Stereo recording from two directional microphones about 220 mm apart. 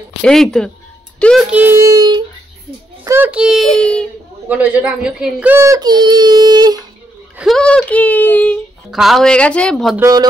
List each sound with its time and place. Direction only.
0.2 s a child's voice: centre (ahead or behind); by 6.9 s 20° right (ahead or behind)
7.3 s speech: centre (ahead or behind)